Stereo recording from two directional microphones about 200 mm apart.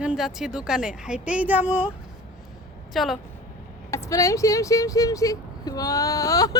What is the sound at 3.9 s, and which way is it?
Speech, 15° left (ahead or behind).